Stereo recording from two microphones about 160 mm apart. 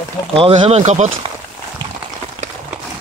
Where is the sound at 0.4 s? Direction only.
35° right (ahead or behind).